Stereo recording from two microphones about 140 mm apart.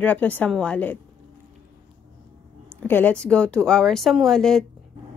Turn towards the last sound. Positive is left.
turn(degrees=5)  # may be behind; listen again after turning